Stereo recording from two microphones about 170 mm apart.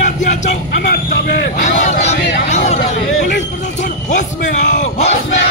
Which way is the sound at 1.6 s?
45° left (ahead or behind).